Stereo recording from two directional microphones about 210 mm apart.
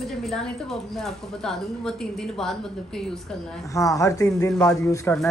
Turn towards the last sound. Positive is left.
turn(degrees=10)  # may be behind; listen again after turning